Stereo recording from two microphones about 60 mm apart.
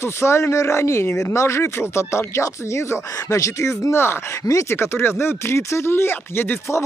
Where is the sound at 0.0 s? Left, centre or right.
Left.